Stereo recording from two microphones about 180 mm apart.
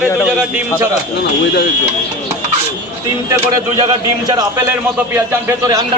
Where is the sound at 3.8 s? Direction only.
20° right (ahead or behind).